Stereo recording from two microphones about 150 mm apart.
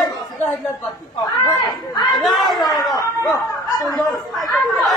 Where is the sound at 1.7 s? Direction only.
25° left (ahead or behind).